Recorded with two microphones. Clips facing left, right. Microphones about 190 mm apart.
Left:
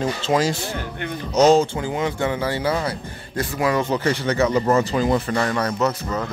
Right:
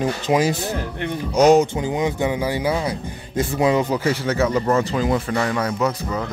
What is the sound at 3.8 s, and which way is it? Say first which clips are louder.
Speech: even; 5° right (ahead or behind).